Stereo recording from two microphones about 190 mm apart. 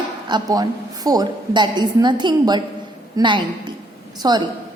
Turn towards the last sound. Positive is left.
turn(degrees=-20)  # may be behind; listen again after turning